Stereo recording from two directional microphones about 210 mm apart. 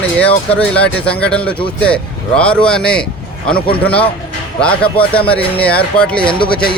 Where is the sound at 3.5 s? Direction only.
25° left (ahead or behind).